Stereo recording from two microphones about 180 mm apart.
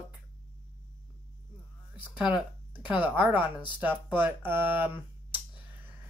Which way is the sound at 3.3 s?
25° left (ahead or behind).